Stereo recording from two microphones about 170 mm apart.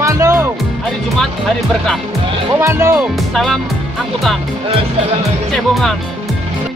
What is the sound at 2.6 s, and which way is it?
Speech, 15° right (ahead or behind).